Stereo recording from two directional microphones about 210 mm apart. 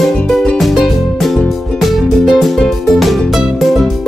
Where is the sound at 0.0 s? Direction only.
Centre (ahead or behind).